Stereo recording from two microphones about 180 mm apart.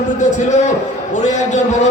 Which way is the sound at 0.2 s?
40° left (ahead or behind).